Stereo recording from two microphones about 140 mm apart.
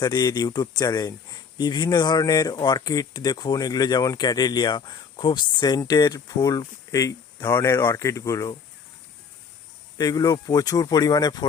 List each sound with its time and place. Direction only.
0.0 s speech: 30° left (ahead or behind)
10.0 s speech: 25° left (ahead or behind)